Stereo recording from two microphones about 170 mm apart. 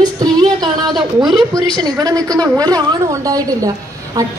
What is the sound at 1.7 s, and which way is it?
A woman's voice, 20° right (ahead or behind).